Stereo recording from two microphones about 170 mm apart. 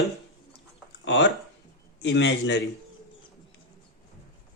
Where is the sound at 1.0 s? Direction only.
90° left.